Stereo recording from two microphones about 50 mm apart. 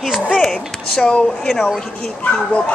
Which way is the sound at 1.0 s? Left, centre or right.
Left.